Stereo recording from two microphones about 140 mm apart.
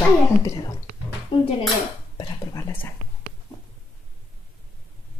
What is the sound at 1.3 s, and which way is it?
Dishes, 35° left (ahead or behind).